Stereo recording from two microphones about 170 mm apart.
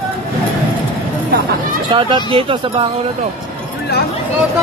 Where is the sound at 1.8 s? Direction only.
30° right (ahead or behind).